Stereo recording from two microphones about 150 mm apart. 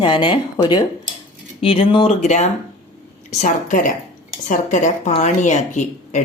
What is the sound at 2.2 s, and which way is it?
Speech, 50° left (ahead or behind).